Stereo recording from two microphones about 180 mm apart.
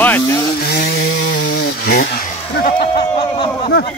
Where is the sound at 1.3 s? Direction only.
55° left (ahead or behind).